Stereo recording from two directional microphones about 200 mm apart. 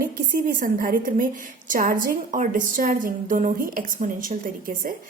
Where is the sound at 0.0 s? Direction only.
45° right (ahead or behind).